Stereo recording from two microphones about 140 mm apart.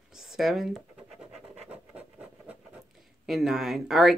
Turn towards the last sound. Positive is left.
turn(degrees=0)  # may be behind; listen again after turning